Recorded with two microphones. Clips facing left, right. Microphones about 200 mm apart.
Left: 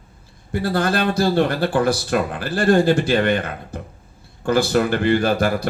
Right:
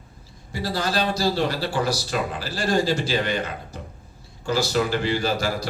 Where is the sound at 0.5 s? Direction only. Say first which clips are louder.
Left 5 dB; 55° left (ahead or behind).